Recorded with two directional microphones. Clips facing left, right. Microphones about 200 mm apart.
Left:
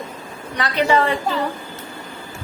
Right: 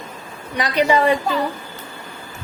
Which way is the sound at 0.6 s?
15° right (ahead or behind).